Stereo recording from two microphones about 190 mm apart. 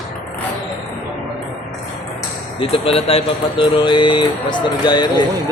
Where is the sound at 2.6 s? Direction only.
30° left (ahead or behind).